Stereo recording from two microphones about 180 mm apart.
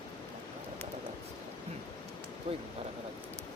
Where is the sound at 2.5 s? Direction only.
30° right (ahead or behind).